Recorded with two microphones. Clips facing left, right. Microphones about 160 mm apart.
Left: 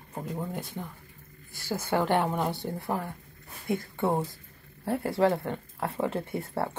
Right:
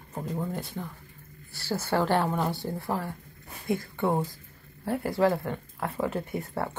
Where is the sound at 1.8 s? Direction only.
20° left (ahead or behind).